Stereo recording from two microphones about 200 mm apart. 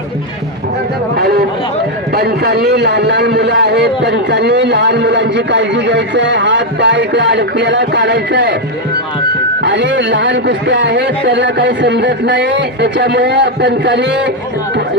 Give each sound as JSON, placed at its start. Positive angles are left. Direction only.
{"t": 1.1, "sound": "a sound", "side_deg": -55}
{"t": 2.1, "sound": "a man's voice", "side_deg": -55}
{"t": 9.6, "sound": "a man's voice", "side_deg": -65}